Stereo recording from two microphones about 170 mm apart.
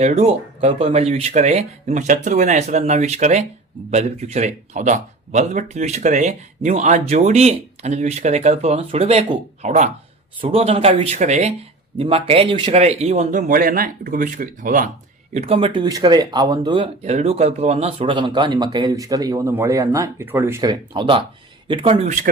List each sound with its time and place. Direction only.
0.0 s speech: 40° right (ahead or behind)
13.5 s speech: 55° right (ahead or behind)
15.3 s speech: 40° right (ahead or behind); by 20.7 s 15° right (ahead or behind)
20.7 s speech: 30° right (ahead or behind)